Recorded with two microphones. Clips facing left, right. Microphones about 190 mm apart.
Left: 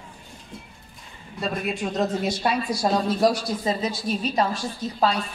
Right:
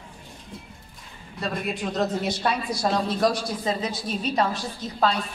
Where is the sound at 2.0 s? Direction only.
10° left (ahead or behind).